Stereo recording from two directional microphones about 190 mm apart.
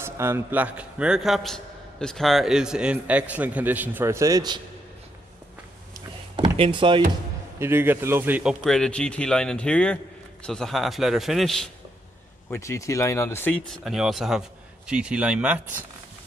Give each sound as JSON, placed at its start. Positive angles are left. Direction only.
{"t": 0.0, "sound": "a man's voice", "side_deg": -15}
{"t": 6.3, "sound": "speech", "side_deg": -25}
{"t": 7.5, "sound": "a man's voice", "side_deg": -10}
{"t": 8.6, "sound": "speech", "side_deg": 5}
{"t": 12.4, "sound": "speech", "side_deg": 15}